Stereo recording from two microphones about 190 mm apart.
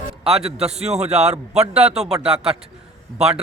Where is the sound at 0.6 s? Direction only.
35° right (ahead or behind).